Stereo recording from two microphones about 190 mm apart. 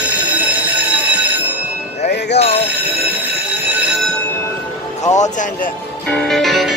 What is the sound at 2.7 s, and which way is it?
Train, 10° right (ahead or behind).